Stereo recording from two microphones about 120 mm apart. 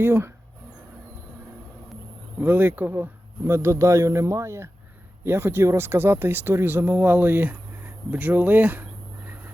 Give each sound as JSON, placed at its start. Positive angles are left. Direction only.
{"t": 0.0, "sound": "speech", "side_deg": -20}
{"t": 2.4, "sound": "speech", "side_deg": -15}